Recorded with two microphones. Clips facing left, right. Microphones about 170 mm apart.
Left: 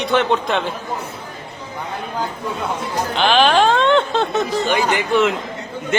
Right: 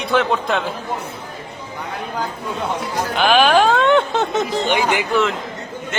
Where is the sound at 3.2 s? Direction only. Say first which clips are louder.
Right 1 dB; 5° right (ahead or behind).